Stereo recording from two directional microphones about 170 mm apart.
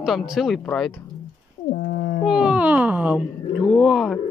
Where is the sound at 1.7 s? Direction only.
60° left (ahead or behind).